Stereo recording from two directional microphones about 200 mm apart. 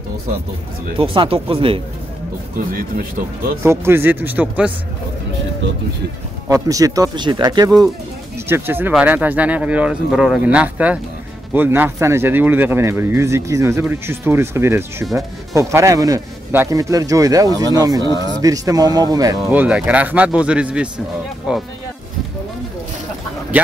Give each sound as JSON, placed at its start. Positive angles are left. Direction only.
{"t": 0.9, "sound": "speech", "side_deg": -25}
{"t": 2.5, "sound": "a man's voice", "side_deg": -45}
{"t": 3.6, "sound": "speech", "side_deg": -10}
{"t": 6.5, "sound": "speech", "side_deg": -15}
{"t": 18.0, "sound": "speech", "side_deg": 20}
{"t": 18.4, "sound": "speech", "side_deg": -20}
{"t": 19.3, "sound": "a man's voice", "side_deg": -5}